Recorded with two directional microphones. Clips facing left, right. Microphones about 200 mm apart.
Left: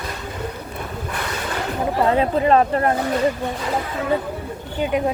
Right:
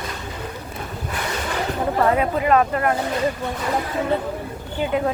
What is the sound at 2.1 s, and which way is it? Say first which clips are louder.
Speech: left 2 dB; 30° left (ahead or behind).